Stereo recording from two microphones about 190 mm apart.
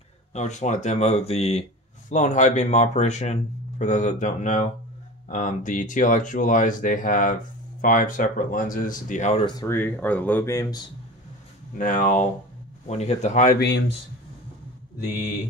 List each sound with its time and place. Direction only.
0.3 s speech: 35° left (ahead or behind)
9.6 s speech: 10° left (ahead or behind)
11.8 s speech: 45° left (ahead or behind)
13.6 s speech: 65° left (ahead or behind)